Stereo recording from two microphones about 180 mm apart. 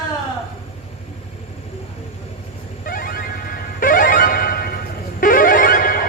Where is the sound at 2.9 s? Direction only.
55° left (ahead or behind).